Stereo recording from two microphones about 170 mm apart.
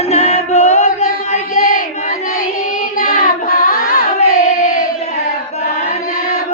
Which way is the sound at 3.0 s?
55° left (ahead or behind).